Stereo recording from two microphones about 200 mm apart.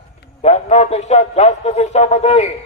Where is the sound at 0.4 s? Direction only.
35° left (ahead or behind).